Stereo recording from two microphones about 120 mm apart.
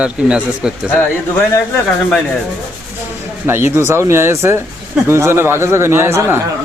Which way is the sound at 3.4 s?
20° right (ahead or behind).